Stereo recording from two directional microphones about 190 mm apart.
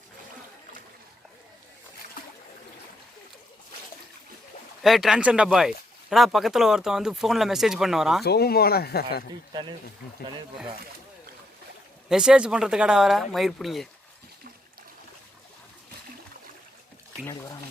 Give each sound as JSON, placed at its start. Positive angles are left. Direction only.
{"t": 4.8, "sound": "speech", "side_deg": 0}
{"t": 8.2, "sound": "speech", "side_deg": 55}
{"t": 9.5, "sound": "speech", "side_deg": -25}
{"t": 12.0, "sound": "speech", "side_deg": -5}
{"t": 17.2, "sound": "speech", "side_deg": 15}